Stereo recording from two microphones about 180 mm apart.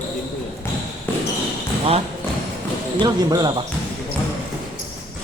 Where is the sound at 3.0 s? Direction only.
20° right (ahead or behind).